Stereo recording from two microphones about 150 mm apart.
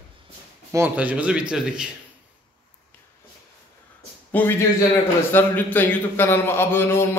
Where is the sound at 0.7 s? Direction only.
15° right (ahead or behind).